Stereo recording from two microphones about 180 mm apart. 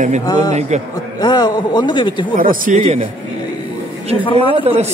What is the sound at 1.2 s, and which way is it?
A man's voice, 20° left (ahead or behind).